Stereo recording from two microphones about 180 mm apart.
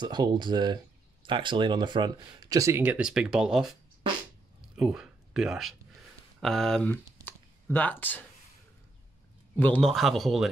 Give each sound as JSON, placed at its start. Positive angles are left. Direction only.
{"t": 0.0, "sound": "speech", "side_deg": -25}
{"t": 4.7, "sound": "speech", "side_deg": -5}
{"t": 7.2, "sound": "a sound", "side_deg": 10}
{"t": 9.6, "sound": "speech", "side_deg": 5}